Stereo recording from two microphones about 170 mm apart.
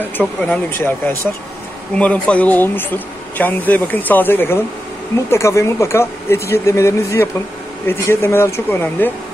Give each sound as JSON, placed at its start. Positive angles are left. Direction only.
{"t": 0.2, "sound": "speech", "side_deg": 10}